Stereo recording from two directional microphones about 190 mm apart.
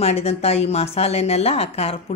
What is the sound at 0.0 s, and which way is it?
Speech, 35° left (ahead or behind).